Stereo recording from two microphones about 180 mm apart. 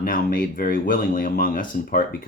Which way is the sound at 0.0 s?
55° left (ahead or behind).